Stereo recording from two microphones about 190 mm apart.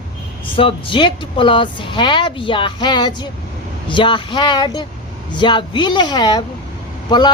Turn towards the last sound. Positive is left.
turn(degrees=25)  # may be behind; listen again after turning